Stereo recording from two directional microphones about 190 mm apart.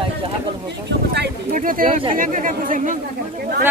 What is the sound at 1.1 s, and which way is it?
Speech, 55° right (ahead or behind).